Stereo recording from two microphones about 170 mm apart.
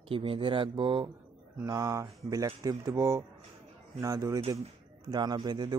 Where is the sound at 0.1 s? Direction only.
30° right (ahead or behind).